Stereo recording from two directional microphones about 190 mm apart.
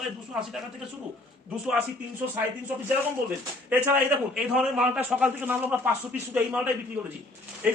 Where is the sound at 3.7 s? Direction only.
10° right (ahead or behind).